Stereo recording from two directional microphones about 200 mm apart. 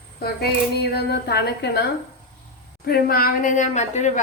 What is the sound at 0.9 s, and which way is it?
Speech, 55° left (ahead or behind).